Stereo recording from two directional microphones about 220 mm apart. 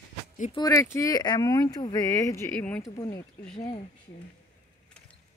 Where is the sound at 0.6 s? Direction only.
15° left (ahead or behind).